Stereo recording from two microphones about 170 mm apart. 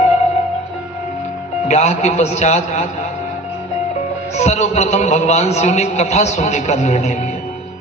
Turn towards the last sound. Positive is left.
turn(degrees=40)  # may be behind; listen again after turning